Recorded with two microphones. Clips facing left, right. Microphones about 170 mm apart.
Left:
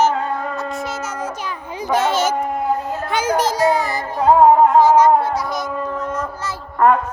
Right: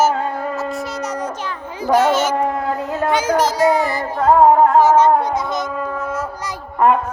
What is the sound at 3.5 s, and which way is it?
Music, 40° left (ahead or behind).